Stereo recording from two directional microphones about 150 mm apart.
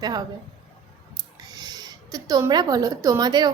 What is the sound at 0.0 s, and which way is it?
Speech, 25° right (ahead or behind).